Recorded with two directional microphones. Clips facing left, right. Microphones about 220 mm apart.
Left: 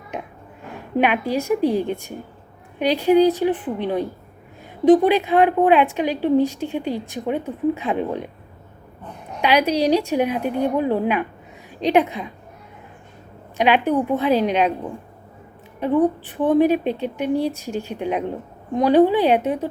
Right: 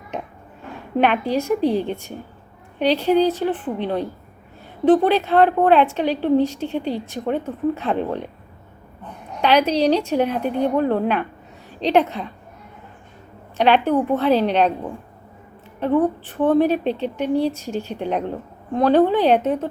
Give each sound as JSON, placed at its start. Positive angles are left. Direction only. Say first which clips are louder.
{"t": 0.9, "sound": "a woman's voice", "louder": "right 1 dB", "side_deg": 10}
{"t": 9.4, "sound": "a woman's voice", "louder": "right 1 dB", "side_deg": 10}
{"t": 13.6, "sound": "a woman's voice", "louder": "right 1 dB", "side_deg": 10}
{"t": 15.8, "sound": "a woman's voice", "louder": "even", "side_deg": 10}